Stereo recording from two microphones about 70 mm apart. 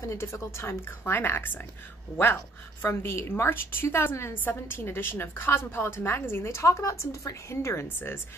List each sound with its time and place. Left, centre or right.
0.0 s a woman's voice: left
2.8 s a woman's voice: left